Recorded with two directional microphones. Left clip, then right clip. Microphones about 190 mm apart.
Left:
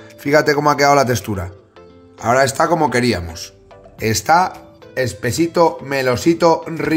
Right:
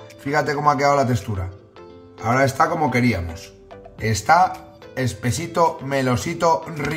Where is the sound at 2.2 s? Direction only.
50° left (ahead or behind).